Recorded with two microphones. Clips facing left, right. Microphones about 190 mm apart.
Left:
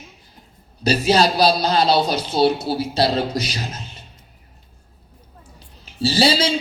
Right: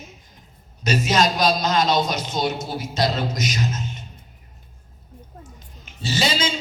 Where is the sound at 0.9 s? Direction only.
35° left (ahead or behind).